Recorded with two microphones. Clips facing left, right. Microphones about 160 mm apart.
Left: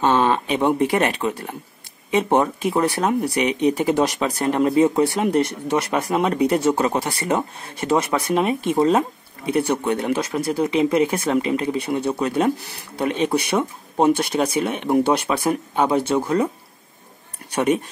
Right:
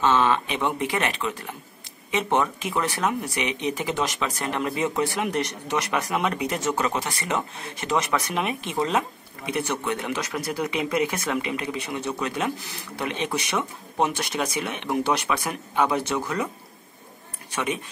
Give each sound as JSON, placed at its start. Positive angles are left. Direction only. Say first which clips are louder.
{"t": 0.0, "sound": "speech", "louder": "left 3 dB", "side_deg": 45}
{"t": 8.4, "sound": "speech", "louder": "left 8 dB", "side_deg": 45}
{"t": 8.7, "sound": "speech", "louder": "left 6 dB", "side_deg": 30}
{"t": 17.5, "sound": "speech", "louder": "left 9 dB", "side_deg": 40}